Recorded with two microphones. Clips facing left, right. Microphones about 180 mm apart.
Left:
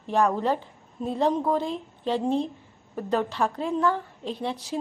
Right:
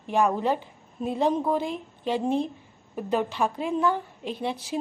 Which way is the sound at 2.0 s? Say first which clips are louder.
Even; 20° right (ahead or behind).